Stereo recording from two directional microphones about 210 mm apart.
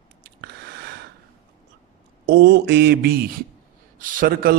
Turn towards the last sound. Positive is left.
turn(degrees=-40)  # may be behind; listen again after turning